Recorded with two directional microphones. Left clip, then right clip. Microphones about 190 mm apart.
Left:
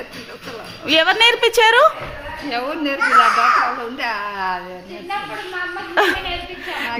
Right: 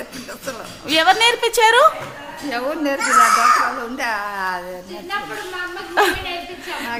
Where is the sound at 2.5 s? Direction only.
20° right (ahead or behind).